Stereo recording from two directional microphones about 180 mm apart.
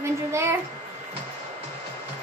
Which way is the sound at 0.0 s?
15° right (ahead or behind).